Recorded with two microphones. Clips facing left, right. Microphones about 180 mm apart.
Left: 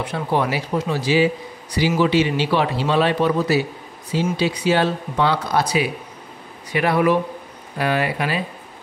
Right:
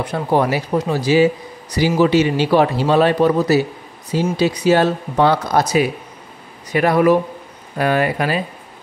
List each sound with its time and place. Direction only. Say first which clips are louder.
0.0 s speech: right 4 dB; 40° right (ahead or behind)